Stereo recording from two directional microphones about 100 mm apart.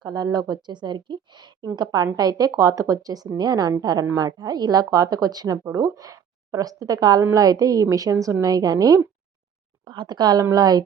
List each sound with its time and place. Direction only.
0.0 s a woman's voice: 45° right (ahead or behind)
9.8 s speech: 50° right (ahead or behind)